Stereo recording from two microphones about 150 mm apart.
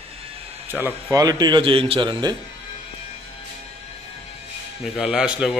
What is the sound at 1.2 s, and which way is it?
A man's voice, 25° right (ahead or behind).